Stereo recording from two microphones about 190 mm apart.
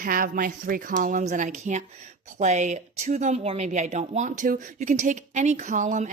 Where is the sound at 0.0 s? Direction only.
45° right (ahead or behind).